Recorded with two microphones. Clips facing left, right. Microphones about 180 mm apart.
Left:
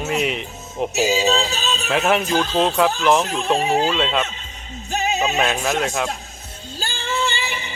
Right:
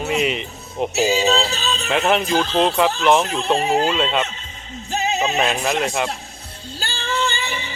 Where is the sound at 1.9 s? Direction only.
Centre (ahead or behind).